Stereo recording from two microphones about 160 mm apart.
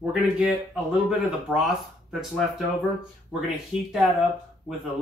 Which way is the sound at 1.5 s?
Centre (ahead or behind).